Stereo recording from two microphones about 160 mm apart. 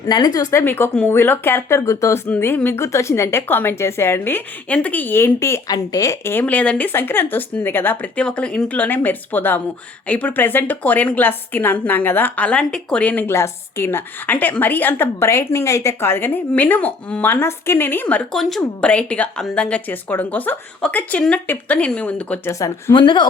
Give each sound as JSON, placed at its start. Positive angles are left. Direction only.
{"t": 0.1, "sound": "speech", "side_deg": 25}
{"t": 0.5, "sound": "speech", "side_deg": 15}
{"t": 22.5, "sound": "speech", "side_deg": 20}